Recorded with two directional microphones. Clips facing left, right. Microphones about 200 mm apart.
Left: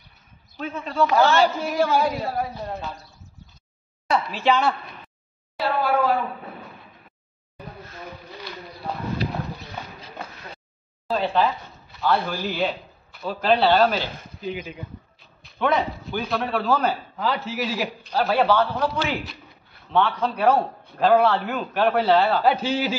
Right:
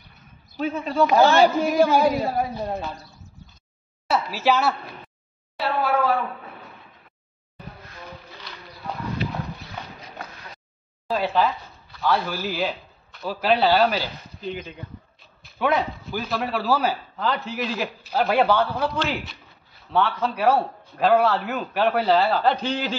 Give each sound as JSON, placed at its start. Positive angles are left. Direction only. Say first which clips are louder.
{"t": 0.6, "sound": "a man's voice", "louder": "right 2 dB", "side_deg": -10}
{"t": 4.1, "sound": "speech", "louder": "even", "side_deg": -5}
{"t": 11.1, "sound": "a man's voice", "louder": "even", "side_deg": -5}
{"t": 14.4, "sound": "a man's voice", "louder": "left 1 dB", "side_deg": 5}
{"t": 15.4, "sound": "a man's voice", "louder": "even", "side_deg": -5}
{"t": 18.0, "sound": "a man's voice", "louder": "right 1 dB", "side_deg": -5}
{"t": 18.9, "sound": "a man's voice", "louder": "even", "side_deg": 0}